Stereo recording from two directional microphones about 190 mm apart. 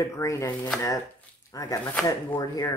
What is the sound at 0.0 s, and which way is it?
Speech, 15° left (ahead or behind).